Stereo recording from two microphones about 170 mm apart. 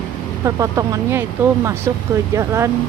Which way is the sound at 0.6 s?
20° right (ahead or behind).